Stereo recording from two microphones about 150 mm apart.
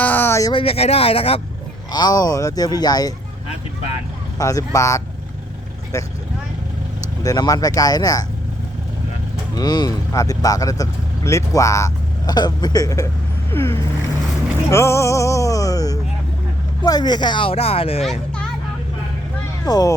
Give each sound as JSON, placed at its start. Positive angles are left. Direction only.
{"t": 0.0, "sound": "a sound", "side_deg": 15}
{"t": 0.5, "sound": "speech", "side_deg": 40}
{"t": 1.9, "sound": "speech", "side_deg": 25}
{"t": 4.4, "sound": "speech", "side_deg": 20}
{"t": 7.2, "sound": "speech", "side_deg": 25}
{"t": 9.6, "sound": "speech", "side_deg": 25}
{"t": 14.7, "sound": "music", "side_deg": 20}
{"t": 16.8, "sound": "speech", "side_deg": 25}
{"t": 19.6, "sound": "speech", "side_deg": 25}